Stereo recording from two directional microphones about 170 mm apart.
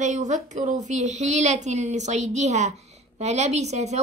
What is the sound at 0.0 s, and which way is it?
Speech, 45° right (ahead or behind).